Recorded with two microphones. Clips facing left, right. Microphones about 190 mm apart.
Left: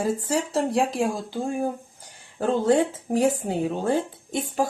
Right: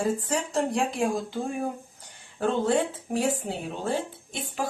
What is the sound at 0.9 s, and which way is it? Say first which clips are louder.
Speech: left 1 dB; centre (ahead or behind).